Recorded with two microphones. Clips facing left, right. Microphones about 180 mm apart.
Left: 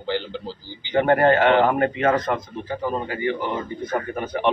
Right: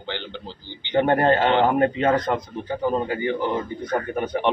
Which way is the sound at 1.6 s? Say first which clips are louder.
Even; 25° right (ahead or behind).